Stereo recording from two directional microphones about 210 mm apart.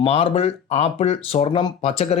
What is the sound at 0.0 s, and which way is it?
Speech, 25° left (ahead or behind).